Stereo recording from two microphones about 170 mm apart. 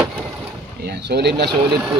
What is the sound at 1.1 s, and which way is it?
Speech, 75° right (ahead or behind).